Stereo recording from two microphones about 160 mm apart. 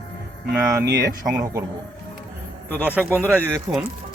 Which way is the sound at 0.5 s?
15° right (ahead or behind).